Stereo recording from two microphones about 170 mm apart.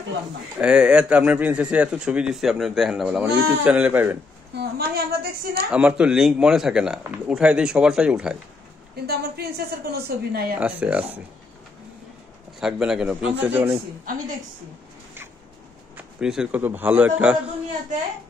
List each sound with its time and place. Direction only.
0.6 s speech: 5° right (ahead or behind)
4.6 s a woman's voice: 65° right (ahead or behind)
5.7 s speech: 5° right (ahead or behind)
9.0 s a woman's voice: 70° right (ahead or behind)
10.6 s speech: 5° right (ahead or behind)
12.5 s speech: 5° right (ahead or behind)
16.0 s speech: 5° right (ahead or behind)